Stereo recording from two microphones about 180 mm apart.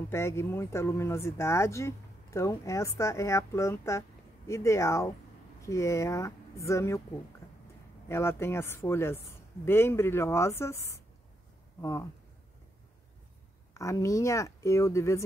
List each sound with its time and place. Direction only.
0.1 s speech: 15° left (ahead or behind)
8.1 s speech: 15° left (ahead or behind)
13.7 s speech: 15° left (ahead or behind)